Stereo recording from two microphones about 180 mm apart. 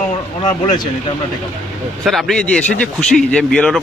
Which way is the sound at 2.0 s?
Centre (ahead or behind).